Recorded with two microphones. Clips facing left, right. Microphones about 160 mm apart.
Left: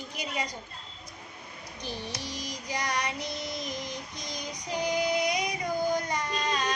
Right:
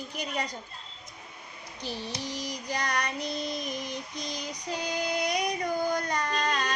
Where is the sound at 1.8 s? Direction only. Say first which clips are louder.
Right 1 dB; 15° left (ahead or behind).